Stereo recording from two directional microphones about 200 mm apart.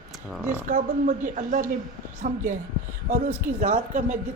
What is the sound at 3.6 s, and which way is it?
Speech, 40° right (ahead or behind).